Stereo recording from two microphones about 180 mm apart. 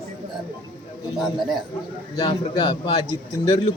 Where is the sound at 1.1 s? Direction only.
Centre (ahead or behind).